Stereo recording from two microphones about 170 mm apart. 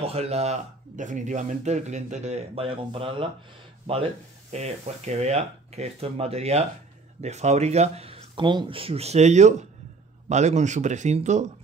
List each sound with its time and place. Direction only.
0.0 s speech: 35° right (ahead or behind)
4.5 s speech: 40° right (ahead or behind)